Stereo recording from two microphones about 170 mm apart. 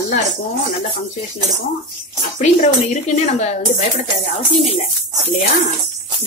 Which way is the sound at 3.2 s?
45° left (ahead or behind).